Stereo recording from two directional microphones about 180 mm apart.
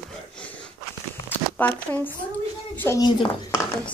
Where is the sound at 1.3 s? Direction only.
10° left (ahead or behind).